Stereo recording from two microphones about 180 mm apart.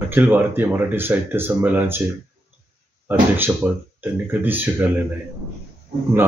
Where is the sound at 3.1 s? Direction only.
10° right (ahead or behind).